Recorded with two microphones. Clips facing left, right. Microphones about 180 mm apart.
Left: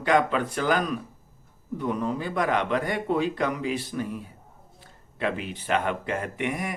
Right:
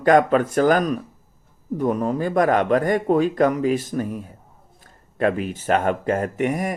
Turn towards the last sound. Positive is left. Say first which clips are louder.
# right 7 dB
turn(degrees=-45)  # may be behind; listen again after turning